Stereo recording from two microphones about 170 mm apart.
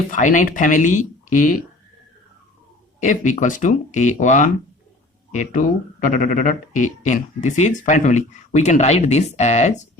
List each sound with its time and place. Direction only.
0.1 s speech: 45° left (ahead or behind)
3.0 s speech: 45° left (ahead or behind)